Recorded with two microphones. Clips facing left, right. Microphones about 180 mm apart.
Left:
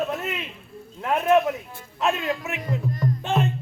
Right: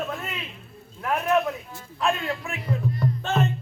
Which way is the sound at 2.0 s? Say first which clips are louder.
Left 2 dB; 20° left (ahead or behind).